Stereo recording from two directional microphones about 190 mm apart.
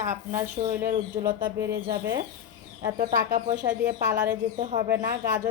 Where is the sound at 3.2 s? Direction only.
45° right (ahead or behind).